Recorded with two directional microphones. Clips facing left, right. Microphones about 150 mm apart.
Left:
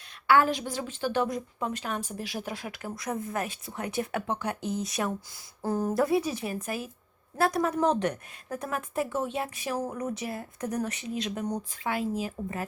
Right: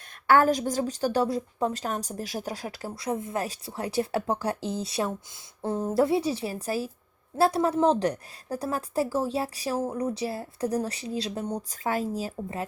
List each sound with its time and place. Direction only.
0.3 s speech: 45° right (ahead or behind)